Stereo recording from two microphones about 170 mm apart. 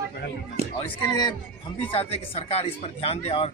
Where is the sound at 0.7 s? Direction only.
25° left (ahead or behind).